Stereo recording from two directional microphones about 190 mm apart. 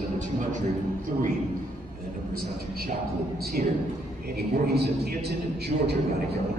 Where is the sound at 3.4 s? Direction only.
55° right (ahead or behind).